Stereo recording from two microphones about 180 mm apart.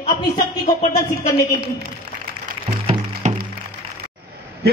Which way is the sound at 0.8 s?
35° left (ahead or behind).